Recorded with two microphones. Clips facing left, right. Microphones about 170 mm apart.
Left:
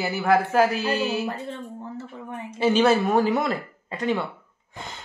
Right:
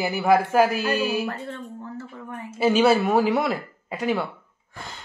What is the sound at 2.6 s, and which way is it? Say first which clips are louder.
Speech: right 1 dB; 10° right (ahead or behind).